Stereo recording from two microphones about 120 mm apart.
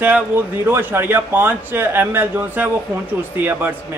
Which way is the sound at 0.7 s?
20° right (ahead or behind).